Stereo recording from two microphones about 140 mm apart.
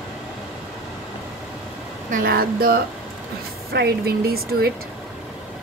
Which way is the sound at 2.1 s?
90° right.